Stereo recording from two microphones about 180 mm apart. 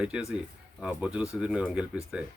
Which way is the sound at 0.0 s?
5° right (ahead or behind).